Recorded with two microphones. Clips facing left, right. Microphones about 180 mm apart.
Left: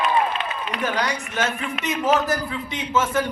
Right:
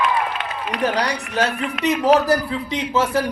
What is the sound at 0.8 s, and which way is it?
A man's voice, 35° right (ahead or behind).